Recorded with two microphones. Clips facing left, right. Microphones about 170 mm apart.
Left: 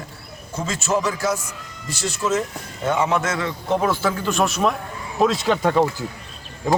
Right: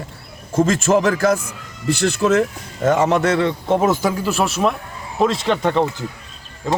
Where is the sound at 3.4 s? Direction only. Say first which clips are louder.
Right 5 dB; 25° right (ahead or behind); by 6.0 s 5° left (ahead or behind).